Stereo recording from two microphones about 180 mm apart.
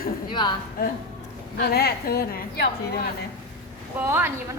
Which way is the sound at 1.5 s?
60° left (ahead or behind).